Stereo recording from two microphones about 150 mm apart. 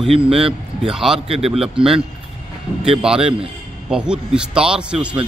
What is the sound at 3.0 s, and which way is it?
A man's voice, 5° right (ahead or behind).